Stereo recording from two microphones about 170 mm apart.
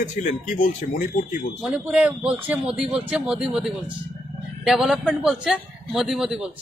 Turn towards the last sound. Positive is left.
turn(degrees=-5)  # may be behind; listen again after turning